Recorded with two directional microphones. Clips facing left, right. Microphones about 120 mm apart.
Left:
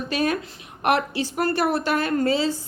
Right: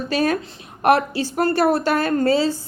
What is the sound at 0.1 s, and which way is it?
A woman's voice, 35° right (ahead or behind).